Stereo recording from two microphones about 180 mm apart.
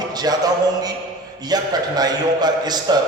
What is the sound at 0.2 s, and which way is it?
A man's voice, 20° right (ahead or behind).